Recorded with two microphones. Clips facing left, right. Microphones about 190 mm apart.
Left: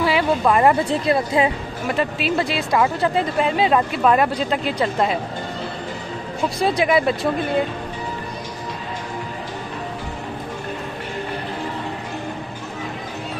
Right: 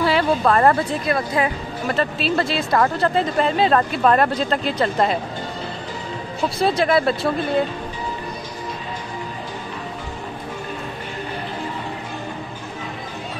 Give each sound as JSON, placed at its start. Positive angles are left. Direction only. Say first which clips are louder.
{"t": 0.0, "sound": "a woman's voice", "louder": "even", "side_deg": 10}
{"t": 0.8, "sound": "speech", "louder": "left 3 dB", "side_deg": 25}
{"t": 1.9, "sound": "speech", "louder": "even", "side_deg": 15}
{"t": 6.6, "sound": "speech", "louder": "even", "side_deg": 15}